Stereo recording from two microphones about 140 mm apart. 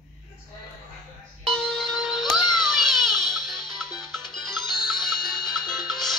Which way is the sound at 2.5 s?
Centre (ahead or behind).